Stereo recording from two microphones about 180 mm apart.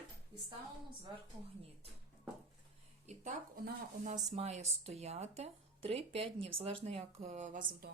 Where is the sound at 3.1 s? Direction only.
40° right (ahead or behind).